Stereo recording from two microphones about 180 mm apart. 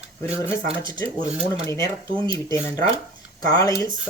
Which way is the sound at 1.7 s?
15° left (ahead or behind).